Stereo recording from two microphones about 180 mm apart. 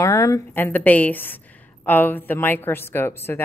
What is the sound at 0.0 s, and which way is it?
A woman's voice, 15° left (ahead or behind).